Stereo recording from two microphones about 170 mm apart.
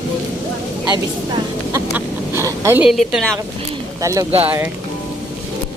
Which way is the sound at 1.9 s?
15° right (ahead or behind).